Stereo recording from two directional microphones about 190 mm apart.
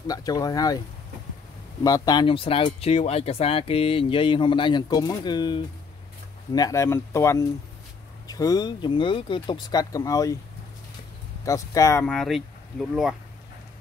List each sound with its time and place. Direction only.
0.0 s speech: 20° left (ahead or behind)
11.4 s speech: 15° left (ahead or behind)
12.1 s speech: centre (ahead or behind)